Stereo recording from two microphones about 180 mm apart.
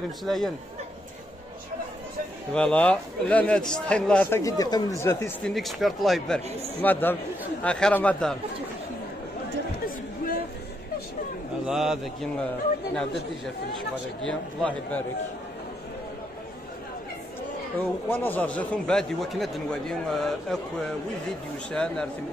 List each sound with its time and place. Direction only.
0.2 s a man's voice: centre (ahead or behind)
2.5 s a man's voice: 5° left (ahead or behind)
5.5 s a man's voice: centre (ahead or behind)
9.8 s a sound: 50° left (ahead or behind)
11.6 s a man's voice: centre (ahead or behind)
14.2 s a man's voice: 5° left (ahead or behind)
17.7 s a man's voice: 10° left (ahead or behind)
21.6 s a man's voice: 5° left (ahead or behind)